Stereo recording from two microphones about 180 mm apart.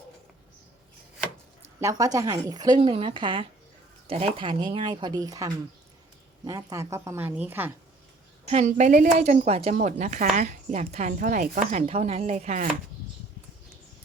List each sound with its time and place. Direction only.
1.8 s speech: 20° right (ahead or behind)
8.4 s a woman's voice: 40° right (ahead or behind)
11.7 s a woman's voice: 35° right (ahead or behind)